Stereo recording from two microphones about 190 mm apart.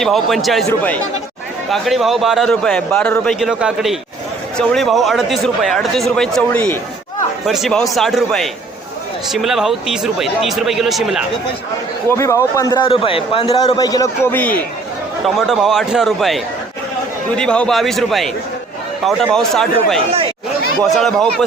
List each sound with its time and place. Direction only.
0.0 s a man's voice: centre (ahead or behind)
12.0 s a man's voice: 15° left (ahead or behind)
20.8 s a man's voice: centre (ahead or behind)